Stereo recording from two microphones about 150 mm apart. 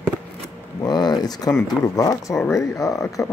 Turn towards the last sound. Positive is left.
turn(degrees=20)  # may be behind; listen again after turning